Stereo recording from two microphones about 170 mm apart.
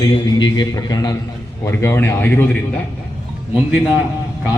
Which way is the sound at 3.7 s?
5° right (ahead or behind).